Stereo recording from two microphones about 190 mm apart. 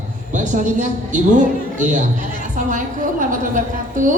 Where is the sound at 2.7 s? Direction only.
45° right (ahead or behind).